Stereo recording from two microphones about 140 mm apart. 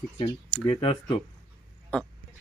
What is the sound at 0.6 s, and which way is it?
Speech, 40° left (ahead or behind).